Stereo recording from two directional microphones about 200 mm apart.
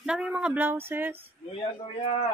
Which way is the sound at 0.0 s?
5° right (ahead or behind).